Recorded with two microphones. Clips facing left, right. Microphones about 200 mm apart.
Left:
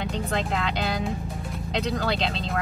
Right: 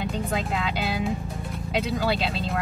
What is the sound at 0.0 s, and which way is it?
Speech, 5° right (ahead or behind).